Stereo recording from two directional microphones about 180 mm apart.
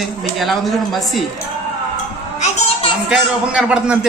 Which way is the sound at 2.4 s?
40° left (ahead or behind).